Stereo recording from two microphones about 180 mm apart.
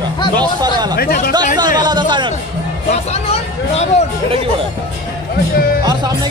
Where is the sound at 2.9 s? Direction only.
35° left (ahead or behind).